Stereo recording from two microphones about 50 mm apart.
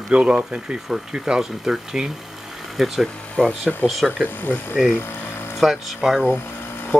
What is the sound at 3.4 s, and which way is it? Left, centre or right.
Speech, centre.